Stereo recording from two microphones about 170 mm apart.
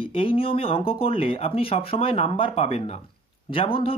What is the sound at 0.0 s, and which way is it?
Speech, 35° left (ahead or behind).